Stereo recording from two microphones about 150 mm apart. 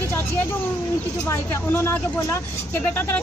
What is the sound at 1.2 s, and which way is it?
A woman's voice, 15° left (ahead or behind).